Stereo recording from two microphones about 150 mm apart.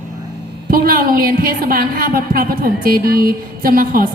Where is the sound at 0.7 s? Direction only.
80° right.